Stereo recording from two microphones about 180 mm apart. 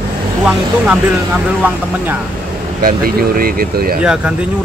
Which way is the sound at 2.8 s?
55° right (ahead or behind).